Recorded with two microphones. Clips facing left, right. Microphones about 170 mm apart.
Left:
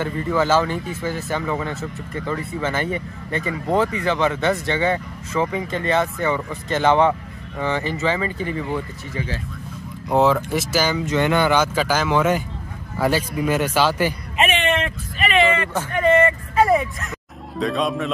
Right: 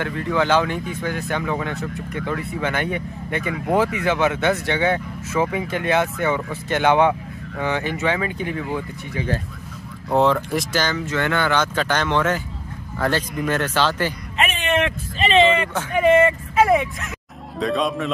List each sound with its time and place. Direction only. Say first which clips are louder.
0.0 s speech: left 1 dB; 5° left (ahead or behind)
10.1 s speech: left 1 dB; centre (ahead or behind)
15.1 s vehicle: right 2 dB; 25° right (ahead or behind)
15.9 s a sound: right 2 dB; 10° right (ahead or behind)
17.6 s speech: even; centre (ahead or behind)